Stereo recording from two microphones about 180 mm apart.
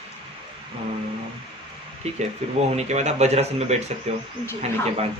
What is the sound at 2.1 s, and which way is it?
Speech, 35° right (ahead or behind).